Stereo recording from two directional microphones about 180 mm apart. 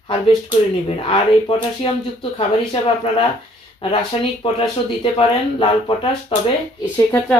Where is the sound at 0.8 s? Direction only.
30° left (ahead or behind).